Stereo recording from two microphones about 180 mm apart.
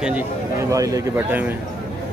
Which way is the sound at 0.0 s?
10° right (ahead or behind).